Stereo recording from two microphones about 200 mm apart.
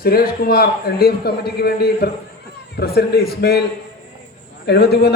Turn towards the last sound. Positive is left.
turn(degrees=55)  # may be behind; listen again after turning